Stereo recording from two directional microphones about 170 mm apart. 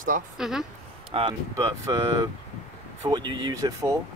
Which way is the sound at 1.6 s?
20° right (ahead or behind).